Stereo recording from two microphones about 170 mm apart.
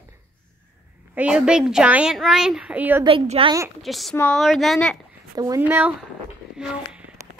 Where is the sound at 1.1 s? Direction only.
5° right (ahead or behind).